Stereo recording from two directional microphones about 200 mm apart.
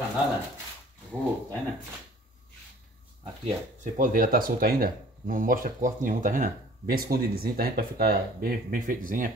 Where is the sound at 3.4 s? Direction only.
40° right (ahead or behind).